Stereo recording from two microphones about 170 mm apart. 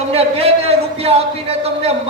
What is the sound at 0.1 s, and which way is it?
A man's voice, 35° right (ahead or behind).